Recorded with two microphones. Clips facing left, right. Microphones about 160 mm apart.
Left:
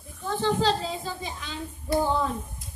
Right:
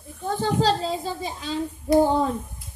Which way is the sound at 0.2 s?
40° right (ahead or behind).